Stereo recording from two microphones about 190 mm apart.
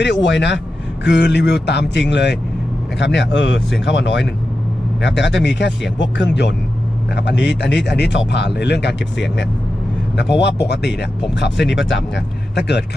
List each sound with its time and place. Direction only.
0.0 s speech: 70° left (ahead or behind)
10.1 s speech: 65° left (ahead or behind)
12.5 s speech: 60° left (ahead or behind)